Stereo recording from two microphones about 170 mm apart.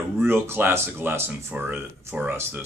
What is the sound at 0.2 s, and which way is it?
Speech, 15° right (ahead or behind).